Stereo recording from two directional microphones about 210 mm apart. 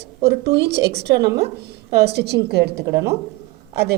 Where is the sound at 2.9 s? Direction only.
15° right (ahead or behind).